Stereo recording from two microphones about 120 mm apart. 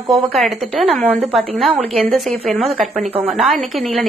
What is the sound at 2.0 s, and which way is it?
A woman's voice, centre (ahead or behind).